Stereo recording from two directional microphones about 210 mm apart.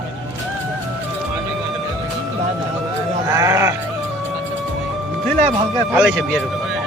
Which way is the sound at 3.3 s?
15° right (ahead or behind).